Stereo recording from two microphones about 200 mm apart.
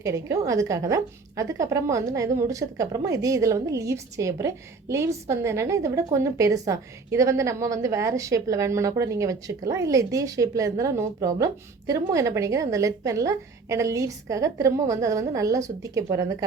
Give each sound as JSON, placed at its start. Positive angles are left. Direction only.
{"t": 0.0, "sound": "a woman's voice", "side_deg": -15}